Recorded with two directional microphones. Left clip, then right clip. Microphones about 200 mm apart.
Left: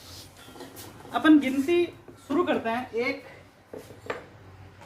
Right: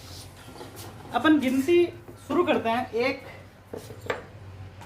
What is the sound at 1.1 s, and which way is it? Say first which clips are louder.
Speech: left 2 dB; 15° left (ahead or behind).